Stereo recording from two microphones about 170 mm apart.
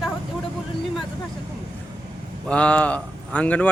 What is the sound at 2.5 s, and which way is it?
Speech, 5° left (ahead or behind).